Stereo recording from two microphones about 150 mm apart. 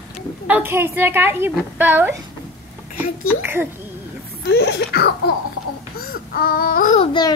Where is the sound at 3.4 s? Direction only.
15° right (ahead or behind).